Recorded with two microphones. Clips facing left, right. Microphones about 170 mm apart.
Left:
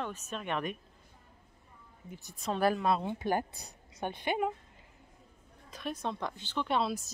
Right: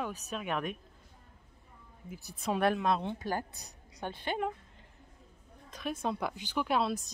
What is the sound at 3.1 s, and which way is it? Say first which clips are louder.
A woman's voice: left 4 dB; 20° left (ahead or behind).